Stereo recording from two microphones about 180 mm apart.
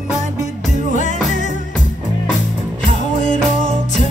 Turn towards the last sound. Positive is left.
turn(degrees=45)  # may be behind; listen again after turning